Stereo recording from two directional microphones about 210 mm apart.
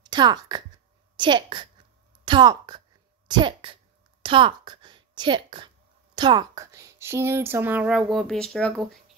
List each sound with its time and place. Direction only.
0.0 s a woman's voice: 20° right (ahead or behind); by 8.8 s 5° left (ahead or behind)